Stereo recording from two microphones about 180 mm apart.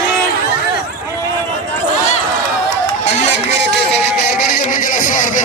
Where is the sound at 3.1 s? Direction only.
40° left (ahead or behind).